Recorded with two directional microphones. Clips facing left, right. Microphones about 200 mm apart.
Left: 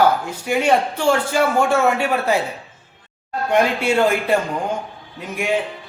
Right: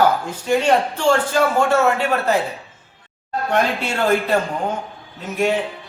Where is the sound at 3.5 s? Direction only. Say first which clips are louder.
Left 4 dB; 10° left (ahead or behind).